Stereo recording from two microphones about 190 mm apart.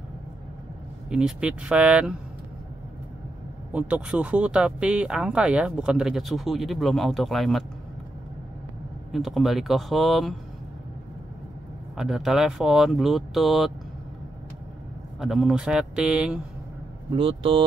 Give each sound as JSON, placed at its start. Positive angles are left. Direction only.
{"t": 1.1, "sound": "speech", "side_deg": -5}
{"t": 3.7, "sound": "speech", "side_deg": -5}
{"t": 9.1, "sound": "speech", "side_deg": 0}
{"t": 12.0, "sound": "speech", "side_deg": 0}
{"t": 15.1, "sound": "speech", "side_deg": 0}
{"t": 17.1, "sound": "speech", "side_deg": -30}